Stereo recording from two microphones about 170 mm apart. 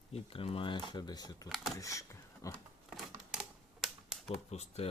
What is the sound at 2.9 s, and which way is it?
Typewriter, centre (ahead or behind).